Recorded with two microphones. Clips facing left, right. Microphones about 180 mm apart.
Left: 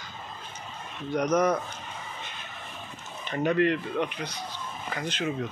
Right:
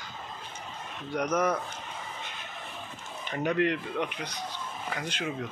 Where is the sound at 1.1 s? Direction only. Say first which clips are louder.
Left 4 dB; 10° right (ahead or behind).